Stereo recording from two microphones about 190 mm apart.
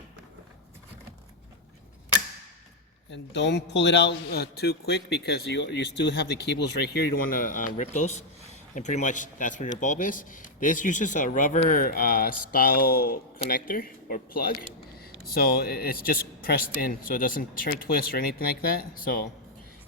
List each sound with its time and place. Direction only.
3.1 s a man's voice: 65° left (ahead or behind); by 19.3 s 50° left (ahead or behind)